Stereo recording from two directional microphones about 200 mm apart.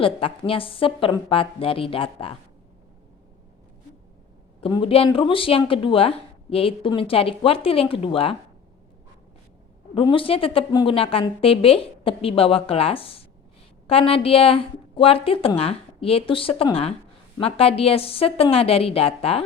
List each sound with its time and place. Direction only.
0.0 s speech: 25° left (ahead or behind)
4.6 s speech: 25° left (ahead or behind)
9.9 s speech: 25° left (ahead or behind)